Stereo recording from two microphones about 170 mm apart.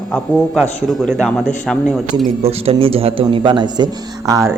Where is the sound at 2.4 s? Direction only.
35° right (ahead or behind).